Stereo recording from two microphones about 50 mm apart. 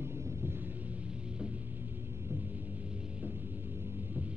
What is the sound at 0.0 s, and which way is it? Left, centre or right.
Rumble, right.